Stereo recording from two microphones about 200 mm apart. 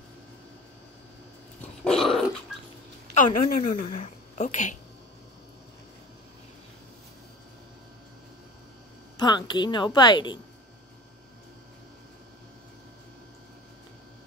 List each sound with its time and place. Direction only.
1.9 s dog: centre (ahead or behind)
3.2 s a woman's voice: 40° left (ahead or behind)
9.1 s a woman's voice: 20° left (ahead or behind)